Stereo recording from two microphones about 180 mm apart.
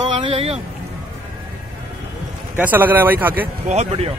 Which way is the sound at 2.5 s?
10° right (ahead or behind).